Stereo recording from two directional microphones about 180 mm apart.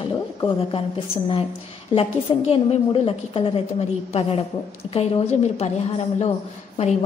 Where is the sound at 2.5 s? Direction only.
30° left (ahead or behind).